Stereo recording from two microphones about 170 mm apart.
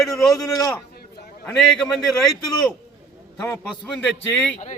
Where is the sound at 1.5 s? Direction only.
5° left (ahead or behind).